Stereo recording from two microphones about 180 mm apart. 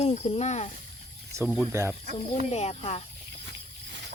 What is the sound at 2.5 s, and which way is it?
Speech, 35° left (ahead or behind).